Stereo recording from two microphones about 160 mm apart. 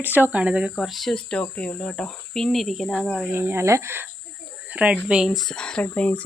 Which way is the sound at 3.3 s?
15° right (ahead or behind).